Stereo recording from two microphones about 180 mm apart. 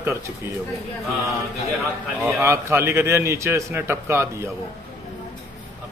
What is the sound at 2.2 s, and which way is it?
A man's voice, 15° right (ahead or behind).